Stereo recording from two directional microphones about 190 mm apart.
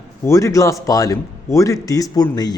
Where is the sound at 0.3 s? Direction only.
15° left (ahead or behind).